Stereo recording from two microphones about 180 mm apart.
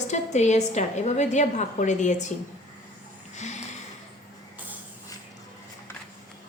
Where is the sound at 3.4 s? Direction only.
40° left (ahead or behind).